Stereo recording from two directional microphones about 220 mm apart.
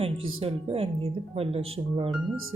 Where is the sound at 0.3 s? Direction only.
25° right (ahead or behind).